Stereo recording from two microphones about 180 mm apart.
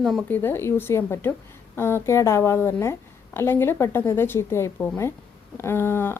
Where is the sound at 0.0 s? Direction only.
Centre (ahead or behind).